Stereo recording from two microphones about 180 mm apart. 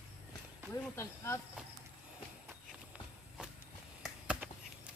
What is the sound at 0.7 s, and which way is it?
Speech, 15° left (ahead or behind).